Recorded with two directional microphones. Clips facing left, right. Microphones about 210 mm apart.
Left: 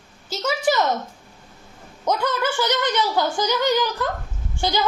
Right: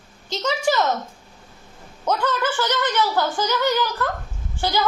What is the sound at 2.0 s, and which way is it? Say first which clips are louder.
A woman's voice: even; 10° left (ahead or behind).